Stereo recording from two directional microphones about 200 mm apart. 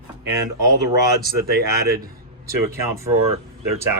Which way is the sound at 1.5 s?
50° right (ahead or behind).